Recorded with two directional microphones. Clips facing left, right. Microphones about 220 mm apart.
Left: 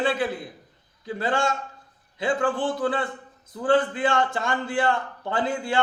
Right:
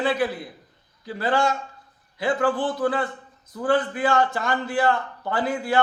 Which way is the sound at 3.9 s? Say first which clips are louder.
Right 2 dB; 25° left (ahead or behind).